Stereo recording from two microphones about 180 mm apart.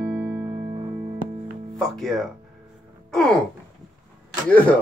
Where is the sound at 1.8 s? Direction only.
Centre (ahead or behind).